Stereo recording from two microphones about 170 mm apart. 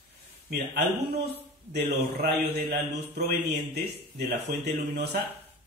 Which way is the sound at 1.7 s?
70° right (ahead or behind).